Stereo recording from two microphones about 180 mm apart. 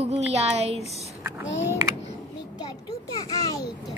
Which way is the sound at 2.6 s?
20° left (ahead or behind).